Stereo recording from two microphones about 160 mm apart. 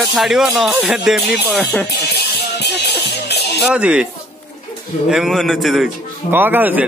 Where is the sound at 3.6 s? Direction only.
5° right (ahead or behind).